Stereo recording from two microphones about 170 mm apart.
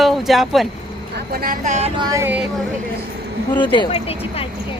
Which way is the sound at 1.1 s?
65° right (ahead or behind).